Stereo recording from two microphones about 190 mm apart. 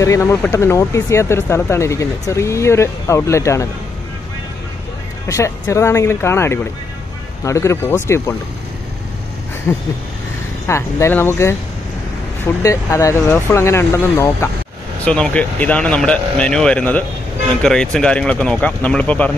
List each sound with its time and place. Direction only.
0.0 s speech: 15° left (ahead or behind)
5.3 s speech: 15° left (ahead or behind)
8.1 s speech: centre (ahead or behind)
9.7 s speech: 10° left (ahead or behind)
12.6 s speech: 15° left (ahead or behind)